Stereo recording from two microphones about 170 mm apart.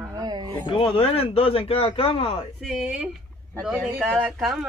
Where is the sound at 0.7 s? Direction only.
30° left (ahead or behind).